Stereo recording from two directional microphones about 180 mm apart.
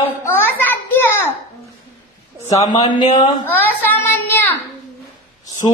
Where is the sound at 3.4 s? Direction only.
10° left (ahead or behind).